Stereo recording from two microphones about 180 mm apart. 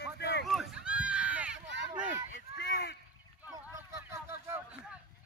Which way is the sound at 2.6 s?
65° left (ahead or behind).